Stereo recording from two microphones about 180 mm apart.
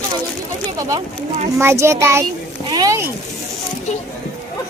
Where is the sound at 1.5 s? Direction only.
15° right (ahead or behind).